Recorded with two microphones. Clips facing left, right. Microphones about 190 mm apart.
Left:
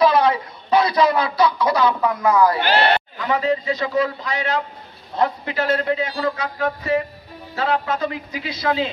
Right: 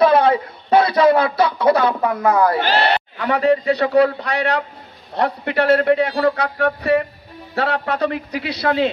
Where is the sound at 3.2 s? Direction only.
65° right (ahead or behind).